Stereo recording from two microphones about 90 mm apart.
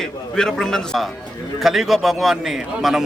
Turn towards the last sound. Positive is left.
turn(degrees=0)  # may be behind; listen again after turning